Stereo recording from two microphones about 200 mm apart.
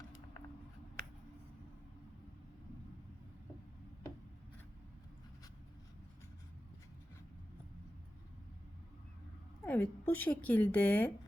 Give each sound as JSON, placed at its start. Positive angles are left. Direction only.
{"t": 9.6, "sound": "a woman's voice", "side_deg": 10}